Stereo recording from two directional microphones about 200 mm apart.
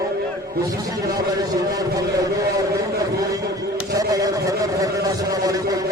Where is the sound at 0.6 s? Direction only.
15° right (ahead or behind).